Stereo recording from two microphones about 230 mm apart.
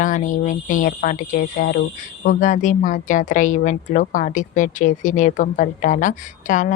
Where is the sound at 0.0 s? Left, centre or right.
Left.